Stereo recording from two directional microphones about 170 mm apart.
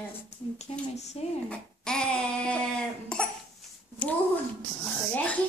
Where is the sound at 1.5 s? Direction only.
5° left (ahead or behind).